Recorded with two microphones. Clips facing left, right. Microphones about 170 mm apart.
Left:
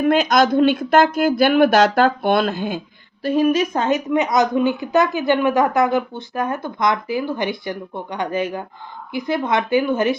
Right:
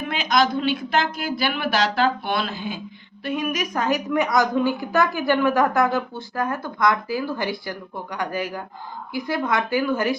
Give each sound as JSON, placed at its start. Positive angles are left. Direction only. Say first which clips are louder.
{"t": 0.0, "sound": "speech", "louder": "left 6 dB", "side_deg": 45}
{"t": 3.2, "sound": "a woman's voice", "louder": "left 8 dB", "side_deg": 30}